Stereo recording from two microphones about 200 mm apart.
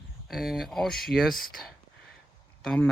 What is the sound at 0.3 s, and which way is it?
Speech, centre (ahead or behind).